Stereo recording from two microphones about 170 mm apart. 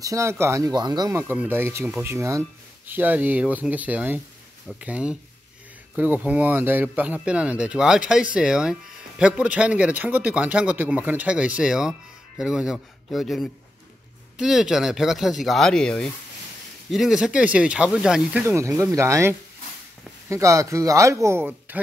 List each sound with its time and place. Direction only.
0.0 s speech: 15° right (ahead or behind)
18.4 s speech: 15° right (ahead or behind)